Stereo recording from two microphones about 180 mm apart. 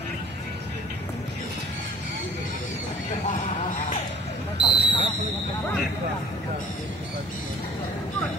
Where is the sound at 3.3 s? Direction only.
45° left (ahead or behind).